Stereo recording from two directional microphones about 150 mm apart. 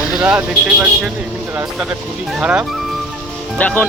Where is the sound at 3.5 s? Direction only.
10° left (ahead or behind).